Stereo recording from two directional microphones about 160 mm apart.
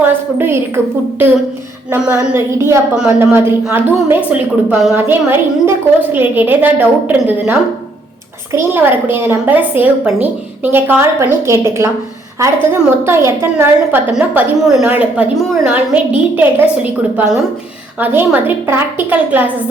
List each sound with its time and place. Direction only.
0.0 s a sound: 15° right (ahead or behind)
1.9 s a woman's voice: 10° right (ahead or behind)
2.9 s a woman's voice: 5° right (ahead or behind)
8.5 s a woman's voice: 15° right (ahead or behind)